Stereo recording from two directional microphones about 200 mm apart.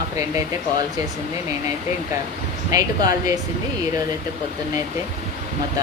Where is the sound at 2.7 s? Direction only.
15° right (ahead or behind).